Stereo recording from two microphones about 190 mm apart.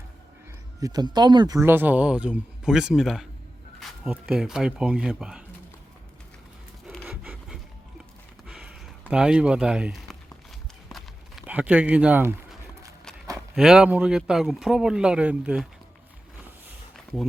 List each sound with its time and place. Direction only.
0.8 s speech: 20° right (ahead or behind); by 5.4 s 5° right (ahead or behind)
6.8 s wood: centre (ahead or behind)
8.4 s a sound: 5° right (ahead or behind)
13.6 s speech: 5° right (ahead or behind)